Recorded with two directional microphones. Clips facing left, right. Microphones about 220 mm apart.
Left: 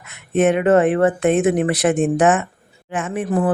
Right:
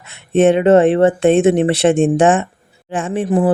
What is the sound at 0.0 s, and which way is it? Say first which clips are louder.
Speech: right 4 dB; 30° right (ahead or behind).